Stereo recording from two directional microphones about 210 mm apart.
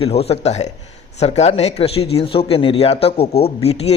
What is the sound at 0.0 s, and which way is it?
Speech, 30° left (ahead or behind).